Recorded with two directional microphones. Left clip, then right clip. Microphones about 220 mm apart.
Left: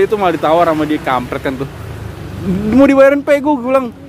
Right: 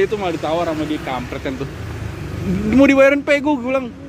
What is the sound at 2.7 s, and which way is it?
Speech, 5° left (ahead or behind).